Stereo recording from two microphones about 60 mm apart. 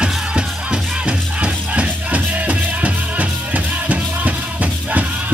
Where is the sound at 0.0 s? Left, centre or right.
Centre.